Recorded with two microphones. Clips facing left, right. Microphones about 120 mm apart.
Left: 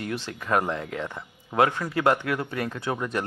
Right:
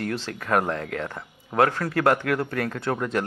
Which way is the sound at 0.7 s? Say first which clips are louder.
Right 1 dB; 20° left (ahead or behind).